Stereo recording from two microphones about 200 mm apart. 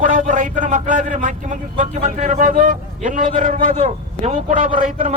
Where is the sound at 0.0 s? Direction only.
40° right (ahead or behind).